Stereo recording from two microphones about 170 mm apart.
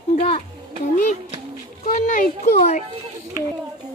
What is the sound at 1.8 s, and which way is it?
A child's voice, 50° left (ahead or behind).